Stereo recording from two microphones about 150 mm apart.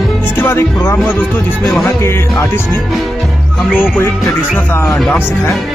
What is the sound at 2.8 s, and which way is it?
Music, centre (ahead or behind).